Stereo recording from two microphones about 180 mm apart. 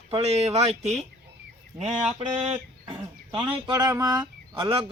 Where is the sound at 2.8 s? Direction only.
25° right (ahead or behind).